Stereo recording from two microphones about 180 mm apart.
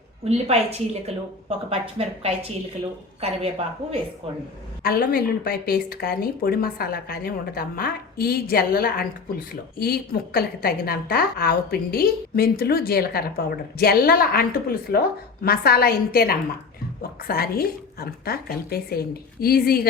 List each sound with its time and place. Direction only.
0.3 s a woman's voice: 35° right (ahead or behind)
4.8 s a woman's voice: 55° left (ahead or behind)